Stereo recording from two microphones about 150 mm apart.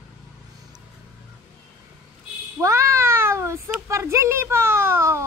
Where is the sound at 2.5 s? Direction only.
20° right (ahead or behind).